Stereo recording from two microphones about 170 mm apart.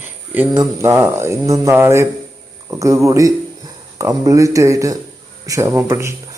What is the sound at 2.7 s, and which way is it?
Speech, 20° right (ahead or behind).